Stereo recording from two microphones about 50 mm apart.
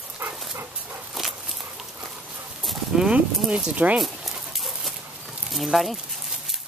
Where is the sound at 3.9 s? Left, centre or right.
Centre.